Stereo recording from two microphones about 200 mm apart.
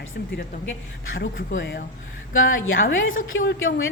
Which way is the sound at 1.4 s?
65° left (ahead or behind).